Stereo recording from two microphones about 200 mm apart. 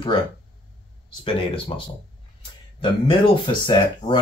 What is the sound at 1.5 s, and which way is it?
Speech, 25° left (ahead or behind).